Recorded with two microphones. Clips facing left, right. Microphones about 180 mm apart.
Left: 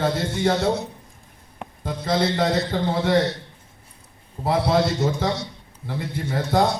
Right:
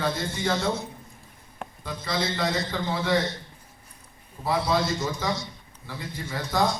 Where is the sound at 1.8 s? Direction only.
55° left (ahead or behind).